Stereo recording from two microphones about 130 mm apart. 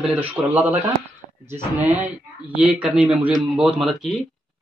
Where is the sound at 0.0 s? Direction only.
10° right (ahead or behind).